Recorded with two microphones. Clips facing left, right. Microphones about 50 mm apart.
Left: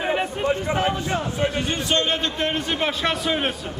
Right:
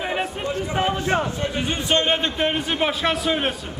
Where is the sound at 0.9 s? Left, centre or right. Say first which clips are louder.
Right 3 dB; right.